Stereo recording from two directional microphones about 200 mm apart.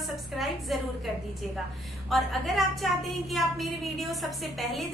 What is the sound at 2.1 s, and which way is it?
A woman's voice, centre (ahead or behind).